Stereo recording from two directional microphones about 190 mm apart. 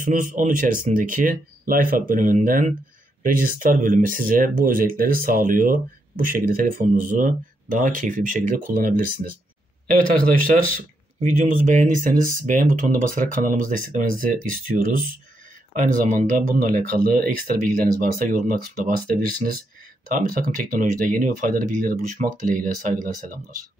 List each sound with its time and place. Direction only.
0.0 s speech: 45° right (ahead or behind)
10.3 s speech: 45° right (ahead or behind)